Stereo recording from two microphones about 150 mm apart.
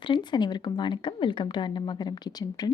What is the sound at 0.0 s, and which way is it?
Speech, 30° left (ahead or behind).